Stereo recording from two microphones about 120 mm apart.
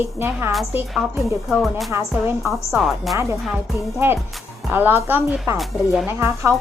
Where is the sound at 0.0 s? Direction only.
20° right (ahead or behind).